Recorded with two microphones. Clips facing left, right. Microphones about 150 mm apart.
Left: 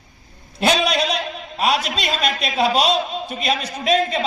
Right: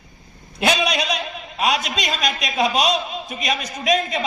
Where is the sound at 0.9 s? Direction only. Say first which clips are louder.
Left 3 dB; 35° left (ahead or behind).